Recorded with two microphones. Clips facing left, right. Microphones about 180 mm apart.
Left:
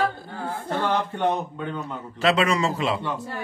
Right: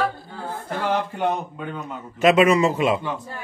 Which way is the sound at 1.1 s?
5° right (ahead or behind).